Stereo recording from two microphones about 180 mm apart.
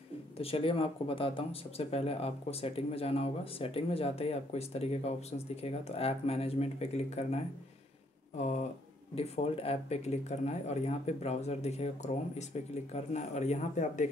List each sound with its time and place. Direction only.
0.4 s speech: 30° left (ahead or behind)
8.4 s speech: 40° left (ahead or behind)